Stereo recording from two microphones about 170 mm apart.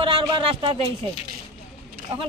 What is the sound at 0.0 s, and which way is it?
Speech, 30° right (ahead or behind).